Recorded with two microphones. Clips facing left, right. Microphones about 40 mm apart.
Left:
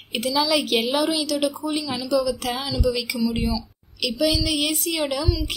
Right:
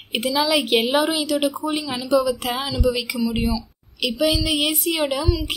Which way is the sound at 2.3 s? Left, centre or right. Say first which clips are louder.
Right 2 dB; centre.